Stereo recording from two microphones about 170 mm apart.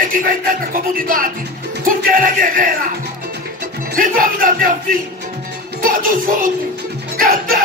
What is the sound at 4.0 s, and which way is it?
Speech, 55° right (ahead or behind).